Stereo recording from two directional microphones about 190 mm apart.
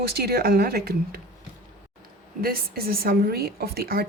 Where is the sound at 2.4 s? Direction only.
55° right (ahead or behind).